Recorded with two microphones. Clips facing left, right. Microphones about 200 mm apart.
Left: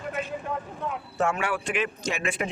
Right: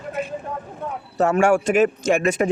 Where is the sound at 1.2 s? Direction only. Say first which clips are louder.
Right 10 dB; 45° right (ahead or behind).